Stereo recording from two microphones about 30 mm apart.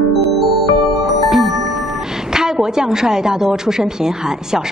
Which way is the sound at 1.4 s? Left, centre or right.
Centre.